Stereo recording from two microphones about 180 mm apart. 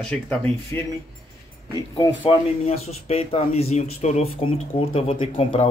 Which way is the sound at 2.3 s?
35° left (ahead or behind).